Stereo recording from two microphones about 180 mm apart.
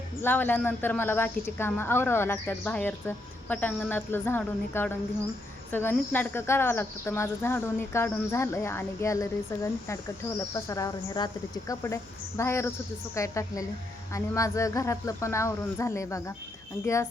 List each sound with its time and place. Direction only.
0.2 s speech: 10° left (ahead or behind)